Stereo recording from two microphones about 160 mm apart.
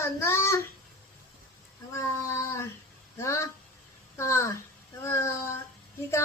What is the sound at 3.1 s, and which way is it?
Speech, 20° left (ahead or behind).